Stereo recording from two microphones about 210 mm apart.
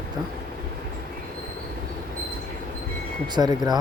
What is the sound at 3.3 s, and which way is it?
Speech, 20° right (ahead or behind).